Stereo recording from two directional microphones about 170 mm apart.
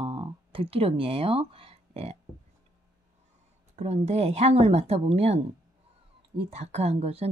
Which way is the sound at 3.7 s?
40° right (ahead or behind).